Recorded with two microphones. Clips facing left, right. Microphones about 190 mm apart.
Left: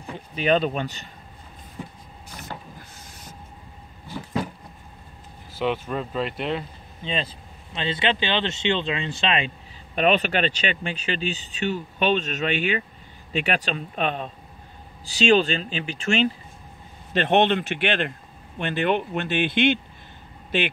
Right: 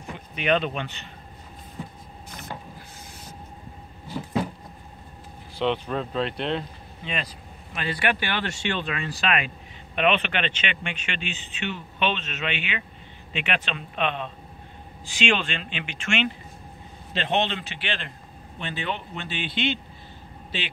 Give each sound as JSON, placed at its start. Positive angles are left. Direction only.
{"t": 0.0, "sound": "speech", "side_deg": 35}
{"t": 5.5, "sound": "speech", "side_deg": 5}
{"t": 7.0, "sound": "speech", "side_deg": 30}
{"t": 9.9, "sound": "speech", "side_deg": 40}
{"t": 17.1, "sound": "speech", "side_deg": 55}